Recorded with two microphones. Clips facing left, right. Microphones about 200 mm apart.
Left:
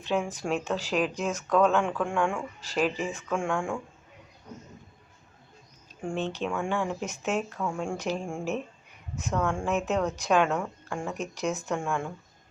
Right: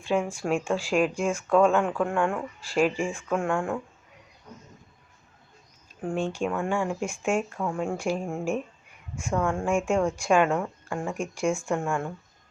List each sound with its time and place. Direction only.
0.0 s a woman's voice: 10° right (ahead or behind)
6.0 s a woman's voice: 10° right (ahead or behind)